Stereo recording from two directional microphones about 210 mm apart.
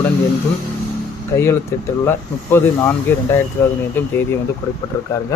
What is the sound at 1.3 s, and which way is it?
Speech, 15° left (ahead or behind).